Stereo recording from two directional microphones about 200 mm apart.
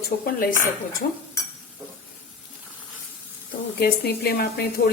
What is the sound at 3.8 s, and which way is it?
Speech, 50° left (ahead or behind).